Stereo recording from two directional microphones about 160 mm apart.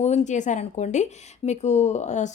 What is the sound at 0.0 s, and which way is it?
Speech, 45° left (ahead or behind).